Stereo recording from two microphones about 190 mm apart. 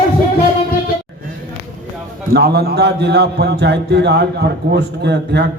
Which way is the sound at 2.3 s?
55° right (ahead or behind).